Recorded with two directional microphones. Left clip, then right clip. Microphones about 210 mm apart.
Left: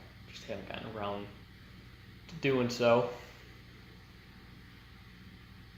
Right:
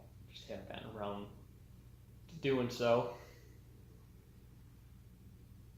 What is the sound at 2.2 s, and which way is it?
Speech, 35° left (ahead or behind).